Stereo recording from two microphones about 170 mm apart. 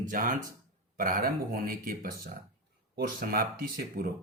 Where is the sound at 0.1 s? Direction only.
50° right (ahead or behind).